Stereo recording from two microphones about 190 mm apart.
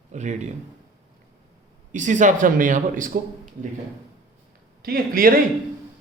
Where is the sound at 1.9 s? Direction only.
40° right (ahead or behind).